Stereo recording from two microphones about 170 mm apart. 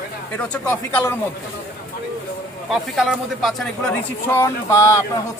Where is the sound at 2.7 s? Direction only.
Centre (ahead or behind).